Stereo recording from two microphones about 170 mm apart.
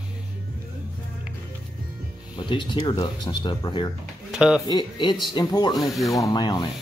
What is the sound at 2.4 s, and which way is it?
Speech, 30° left (ahead or behind).